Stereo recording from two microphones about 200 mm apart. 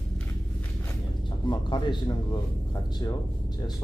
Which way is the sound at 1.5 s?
20° left (ahead or behind).